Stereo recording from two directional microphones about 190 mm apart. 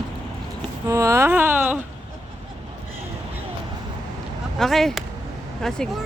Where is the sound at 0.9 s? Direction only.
15° right (ahead or behind).